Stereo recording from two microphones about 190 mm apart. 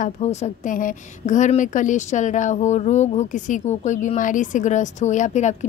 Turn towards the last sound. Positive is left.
turn(degrees=40)  # may be behind; listen again after turning